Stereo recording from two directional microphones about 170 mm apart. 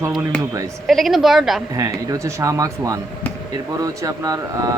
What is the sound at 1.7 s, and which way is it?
Speech, 20° right (ahead or behind).